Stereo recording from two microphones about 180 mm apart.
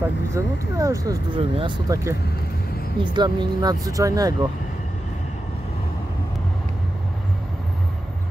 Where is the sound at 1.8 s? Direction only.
20° right (ahead or behind).